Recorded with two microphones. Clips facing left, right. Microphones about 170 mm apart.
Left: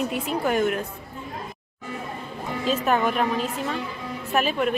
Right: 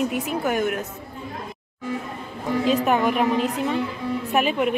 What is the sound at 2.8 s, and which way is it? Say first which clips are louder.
A woman's voice: right 2 dB; 15° right (ahead or behind).